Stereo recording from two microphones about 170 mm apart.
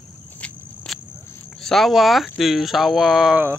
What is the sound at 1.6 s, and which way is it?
Speech, centre (ahead or behind).